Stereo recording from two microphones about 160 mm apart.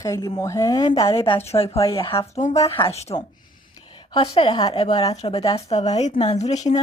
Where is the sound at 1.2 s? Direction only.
35° left (ahead or behind).